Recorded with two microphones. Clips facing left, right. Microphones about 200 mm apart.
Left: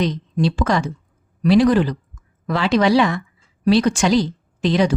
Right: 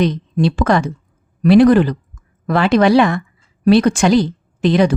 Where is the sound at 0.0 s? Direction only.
55° right (ahead or behind).